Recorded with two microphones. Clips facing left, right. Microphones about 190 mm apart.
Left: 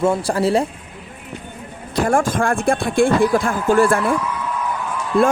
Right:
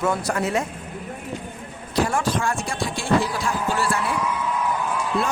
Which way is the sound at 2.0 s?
50° left (ahead or behind).